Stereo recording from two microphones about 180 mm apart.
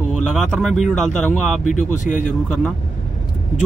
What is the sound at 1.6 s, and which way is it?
Speech, 45° left (ahead or behind).